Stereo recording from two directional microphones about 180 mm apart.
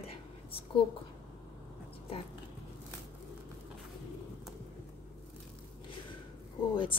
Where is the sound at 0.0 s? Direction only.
30° left (ahead or behind).